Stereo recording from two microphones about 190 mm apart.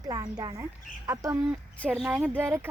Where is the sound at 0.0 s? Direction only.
20° right (ahead or behind).